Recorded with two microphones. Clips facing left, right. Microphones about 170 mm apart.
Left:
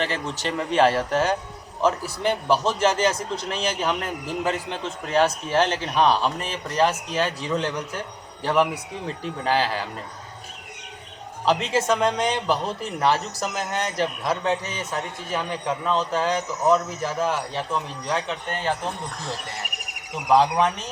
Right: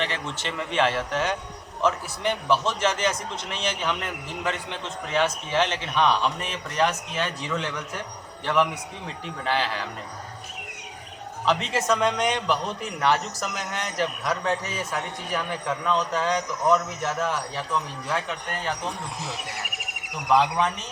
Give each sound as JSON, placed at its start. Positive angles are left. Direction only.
{"t": 0.0, "sound": "a man's voice", "side_deg": 40}
{"t": 11.7, "sound": "a man's voice", "side_deg": 30}
{"t": 16.5, "sound": "speech", "side_deg": 5}
{"t": 16.7, "sound": "a man's voice", "side_deg": 35}
{"t": 18.8, "sound": "speech", "side_deg": 0}
{"t": 20.4, "sound": "a man's voice", "side_deg": 35}